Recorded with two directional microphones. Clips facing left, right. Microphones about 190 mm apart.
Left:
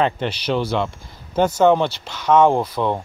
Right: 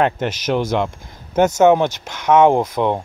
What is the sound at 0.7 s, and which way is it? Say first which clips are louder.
Speech: right 2 dB; 15° right (ahead or behind).